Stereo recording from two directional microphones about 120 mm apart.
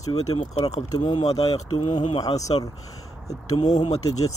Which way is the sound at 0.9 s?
35° left (ahead or behind).